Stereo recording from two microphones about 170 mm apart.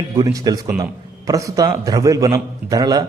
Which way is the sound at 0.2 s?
20° right (ahead or behind).